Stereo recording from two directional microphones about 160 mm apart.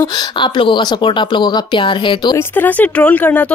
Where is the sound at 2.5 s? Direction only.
10° left (ahead or behind).